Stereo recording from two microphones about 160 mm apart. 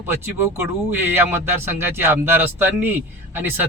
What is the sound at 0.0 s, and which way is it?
Speech, 15° right (ahead or behind).